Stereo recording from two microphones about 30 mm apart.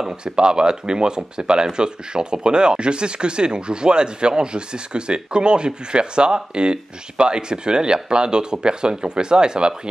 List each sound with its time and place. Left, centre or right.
0.2 s speech: right